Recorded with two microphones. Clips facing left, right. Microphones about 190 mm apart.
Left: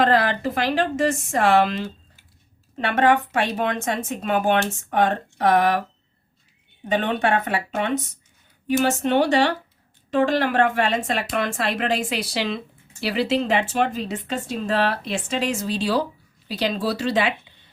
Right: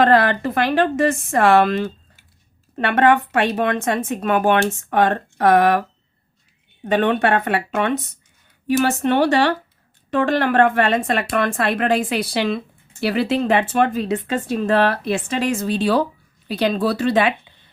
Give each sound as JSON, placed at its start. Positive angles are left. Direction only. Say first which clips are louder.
{"t": 0.0, "sound": "a woman's voice", "louder": "right 4 dB", "side_deg": -60}
{"t": 6.8, "sound": "a woman's voice", "louder": "right 4 dB", "side_deg": -60}